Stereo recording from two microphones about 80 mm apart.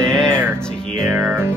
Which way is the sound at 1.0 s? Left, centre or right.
Right.